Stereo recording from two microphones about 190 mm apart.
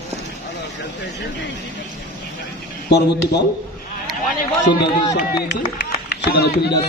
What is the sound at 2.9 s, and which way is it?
Speech, 60° left (ahead or behind).